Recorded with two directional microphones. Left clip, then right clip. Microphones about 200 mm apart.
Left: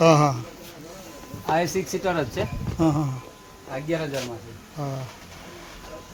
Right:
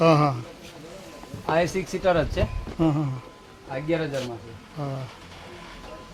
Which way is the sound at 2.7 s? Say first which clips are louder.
Left 1 dB; 10° left (ahead or behind).